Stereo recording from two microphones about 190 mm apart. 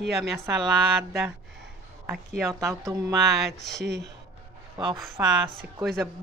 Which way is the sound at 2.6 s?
15° right (ahead or behind).